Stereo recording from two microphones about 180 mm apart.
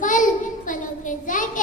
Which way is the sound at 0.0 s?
45° left (ahead or behind).